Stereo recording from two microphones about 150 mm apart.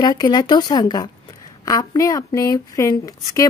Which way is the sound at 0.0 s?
25° left (ahead or behind).